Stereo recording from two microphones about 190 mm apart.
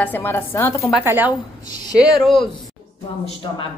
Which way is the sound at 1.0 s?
10° right (ahead or behind).